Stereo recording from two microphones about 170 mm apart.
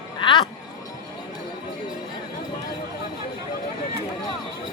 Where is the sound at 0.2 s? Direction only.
25° left (ahead or behind).